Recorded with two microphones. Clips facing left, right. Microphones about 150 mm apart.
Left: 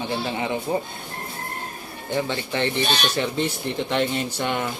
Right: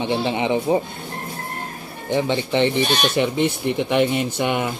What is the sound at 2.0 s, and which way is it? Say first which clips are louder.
Speech: right 5 dB; 20° right (ahead or behind).